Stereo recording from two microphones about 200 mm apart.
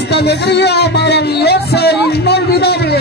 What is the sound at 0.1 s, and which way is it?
Speech, 55° left (ahead or behind).